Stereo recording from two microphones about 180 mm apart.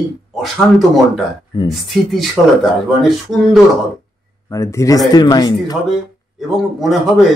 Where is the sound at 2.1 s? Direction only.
Centre (ahead or behind).